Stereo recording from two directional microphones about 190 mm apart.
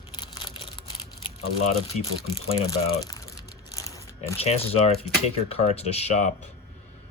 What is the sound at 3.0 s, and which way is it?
Crumpling, 20° left (ahead or behind).